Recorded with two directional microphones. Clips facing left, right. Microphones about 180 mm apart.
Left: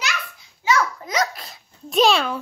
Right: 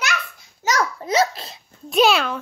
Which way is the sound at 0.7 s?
40° right (ahead or behind).